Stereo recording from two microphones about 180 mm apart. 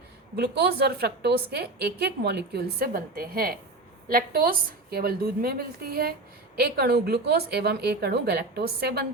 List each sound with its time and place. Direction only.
0.3 s a woman's voice: 60° right (ahead or behind)